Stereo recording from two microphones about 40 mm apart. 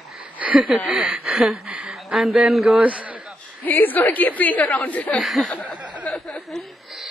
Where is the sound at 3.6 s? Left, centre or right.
Left.